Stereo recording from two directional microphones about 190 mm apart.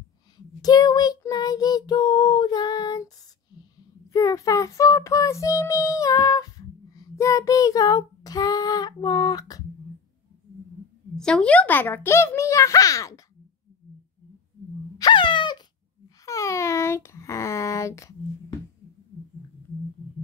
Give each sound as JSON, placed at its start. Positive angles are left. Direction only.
{"t": 0.6, "sound": "child singing", "side_deg": 20}
{"t": 4.1, "sound": "child singing", "side_deg": 15}
{"t": 11.1, "sound": "child singing", "side_deg": 5}
{"t": 15.0, "sound": "a sound", "side_deg": 25}
{"t": 16.3, "sound": "speech", "side_deg": 15}